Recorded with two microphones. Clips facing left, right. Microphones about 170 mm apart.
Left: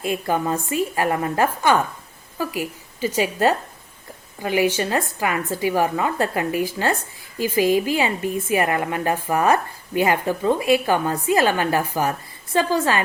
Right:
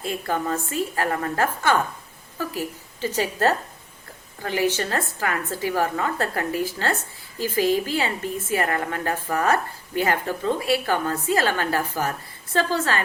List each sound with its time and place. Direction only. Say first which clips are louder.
0.0 s a woman's voice: left 4 dB; 15° left (ahead or behind)